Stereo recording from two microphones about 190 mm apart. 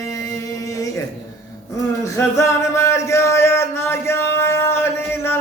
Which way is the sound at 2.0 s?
15° left (ahead or behind).